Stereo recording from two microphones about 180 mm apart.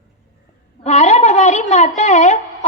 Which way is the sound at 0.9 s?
40° left (ahead or behind).